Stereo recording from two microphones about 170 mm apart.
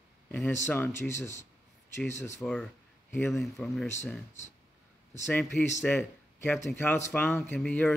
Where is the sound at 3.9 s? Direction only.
15° left (ahead or behind).